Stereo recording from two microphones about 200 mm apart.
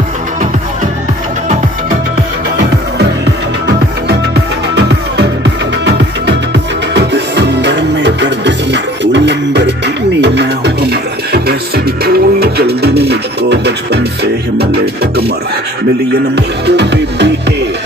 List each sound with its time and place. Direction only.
4.7 s music: 60° right (ahead or behind)
16.3 s music: 60° right (ahead or behind)